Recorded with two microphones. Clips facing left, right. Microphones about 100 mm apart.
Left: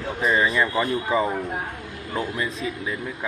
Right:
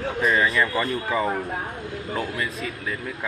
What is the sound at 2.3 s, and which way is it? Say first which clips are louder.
Speech: left 2 dB; 25° left (ahead or behind).